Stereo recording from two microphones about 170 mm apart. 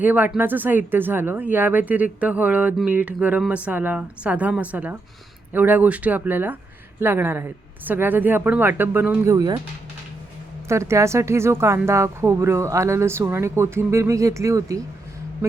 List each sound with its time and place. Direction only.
0.0 s speech: 10° right (ahead or behind)
10.7 s speech: 15° right (ahead or behind)